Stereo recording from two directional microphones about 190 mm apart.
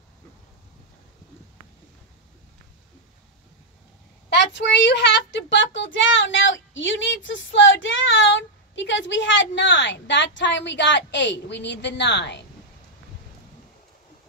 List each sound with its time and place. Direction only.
4.3 s a child's voice: 65° left (ahead or behind)